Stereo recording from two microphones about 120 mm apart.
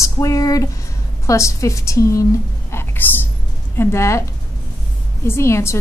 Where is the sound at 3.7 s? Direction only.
20° left (ahead or behind).